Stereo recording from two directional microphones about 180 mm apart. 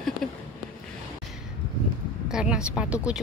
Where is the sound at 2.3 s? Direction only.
5° right (ahead or behind).